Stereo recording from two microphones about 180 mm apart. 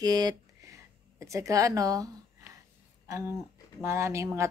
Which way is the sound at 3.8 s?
15° right (ahead or behind).